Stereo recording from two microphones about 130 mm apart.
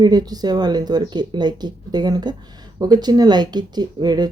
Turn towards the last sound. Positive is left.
turn(degrees=-35)  # may be behind; listen again after turning